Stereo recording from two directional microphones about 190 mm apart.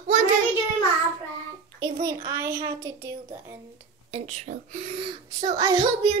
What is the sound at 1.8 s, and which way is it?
A child's voice, 20° right (ahead or behind).